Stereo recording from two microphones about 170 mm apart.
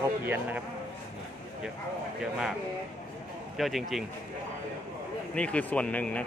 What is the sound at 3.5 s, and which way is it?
Speech, centre (ahead or behind).